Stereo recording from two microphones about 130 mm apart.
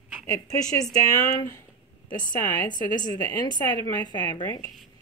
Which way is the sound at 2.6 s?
35° left (ahead or behind).